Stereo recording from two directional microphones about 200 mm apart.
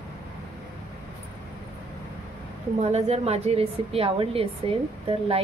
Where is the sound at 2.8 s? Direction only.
35° right (ahead or behind).